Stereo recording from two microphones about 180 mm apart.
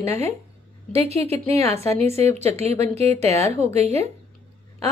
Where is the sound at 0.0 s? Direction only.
35° right (ahead or behind).